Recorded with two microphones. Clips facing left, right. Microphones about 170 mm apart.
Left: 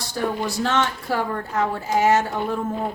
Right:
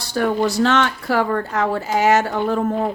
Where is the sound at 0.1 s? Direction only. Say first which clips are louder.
Right 6 dB; 75° right (ahead or behind).